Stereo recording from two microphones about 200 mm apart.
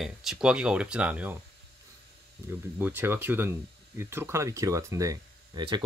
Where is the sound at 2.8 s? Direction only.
10° right (ahead or behind).